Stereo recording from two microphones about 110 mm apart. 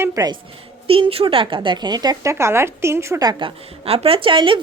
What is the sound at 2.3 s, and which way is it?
Speech, 25° right (ahead or behind).